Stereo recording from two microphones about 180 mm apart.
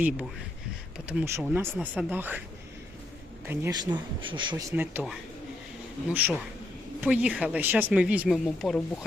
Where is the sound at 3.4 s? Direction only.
15° right (ahead or behind).